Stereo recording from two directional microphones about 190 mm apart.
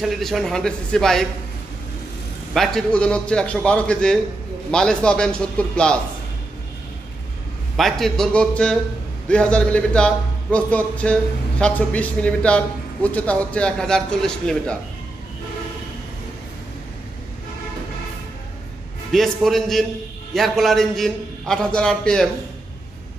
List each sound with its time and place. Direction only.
0.0 s a man's voice: centre (ahead or behind)
2.5 s a man's voice: centre (ahead or behind)
7.7 s a man's voice: centre (ahead or behind)
19.1 s a man's voice: centre (ahead or behind)